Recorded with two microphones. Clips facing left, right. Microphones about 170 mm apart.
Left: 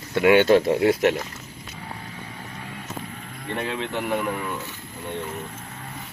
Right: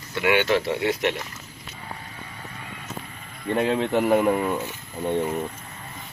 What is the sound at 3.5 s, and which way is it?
Speech, 35° right (ahead or behind).